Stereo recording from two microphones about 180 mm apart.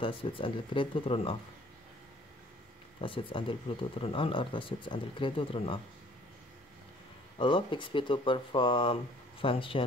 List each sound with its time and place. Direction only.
0.0 s speech: 30° left (ahead or behind)
3.0 s speech: 30° left (ahead or behind)
7.3 s speech: 25° left (ahead or behind)